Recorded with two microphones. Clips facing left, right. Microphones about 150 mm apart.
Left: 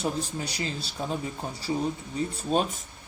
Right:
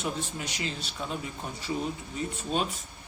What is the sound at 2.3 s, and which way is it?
Speech, 35° left (ahead or behind).